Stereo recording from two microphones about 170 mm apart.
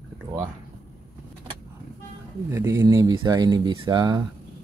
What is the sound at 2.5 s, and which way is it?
Speech, 15° right (ahead or behind).